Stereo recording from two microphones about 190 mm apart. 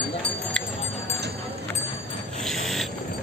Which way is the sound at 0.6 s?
5° left (ahead or behind).